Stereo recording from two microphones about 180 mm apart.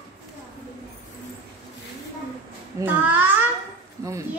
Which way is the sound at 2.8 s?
10° right (ahead or behind).